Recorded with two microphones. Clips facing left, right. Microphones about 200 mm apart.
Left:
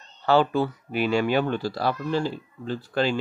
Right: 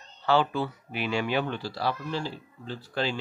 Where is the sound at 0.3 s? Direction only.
45° left (ahead or behind).